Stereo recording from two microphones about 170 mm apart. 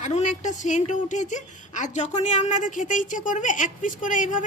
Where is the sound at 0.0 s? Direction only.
45° left (ahead or behind).